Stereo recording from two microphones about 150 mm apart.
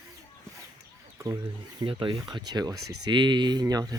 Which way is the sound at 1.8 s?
35° right (ahead or behind).